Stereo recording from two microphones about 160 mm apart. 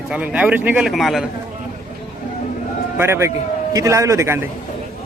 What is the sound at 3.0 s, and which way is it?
Speech, 15° right (ahead or behind).